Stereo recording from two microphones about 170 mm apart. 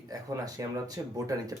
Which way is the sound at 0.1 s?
20° right (ahead or behind).